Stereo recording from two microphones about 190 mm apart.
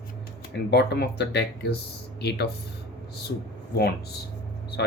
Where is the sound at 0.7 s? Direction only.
60° left (ahead or behind).